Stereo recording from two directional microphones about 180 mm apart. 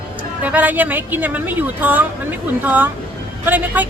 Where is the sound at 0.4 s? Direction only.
10° right (ahead or behind).